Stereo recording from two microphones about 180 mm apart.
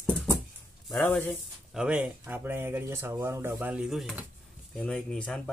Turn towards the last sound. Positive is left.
turn(degrees=5)  # may be behind; listen again after turning